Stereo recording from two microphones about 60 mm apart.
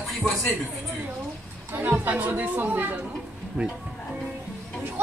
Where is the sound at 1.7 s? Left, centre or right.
Right.